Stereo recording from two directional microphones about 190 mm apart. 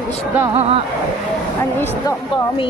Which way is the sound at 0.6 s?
30° right (ahead or behind).